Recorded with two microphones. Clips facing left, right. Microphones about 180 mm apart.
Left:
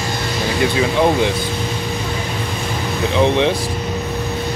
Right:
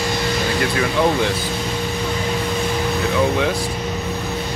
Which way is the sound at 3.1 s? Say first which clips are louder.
Left 5 dB; 25° left (ahead or behind).